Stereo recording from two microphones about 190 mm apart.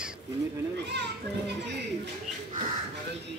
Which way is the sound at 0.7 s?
65° right (ahead or behind).